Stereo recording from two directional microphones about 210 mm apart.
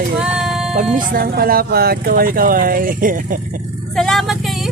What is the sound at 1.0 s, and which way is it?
Speech, 45° right (ahead or behind).